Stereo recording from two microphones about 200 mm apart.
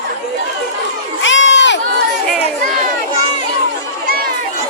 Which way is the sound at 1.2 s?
70° left (ahead or behind).